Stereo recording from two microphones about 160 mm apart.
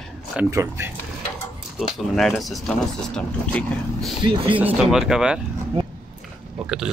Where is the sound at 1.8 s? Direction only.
Centre (ahead or behind).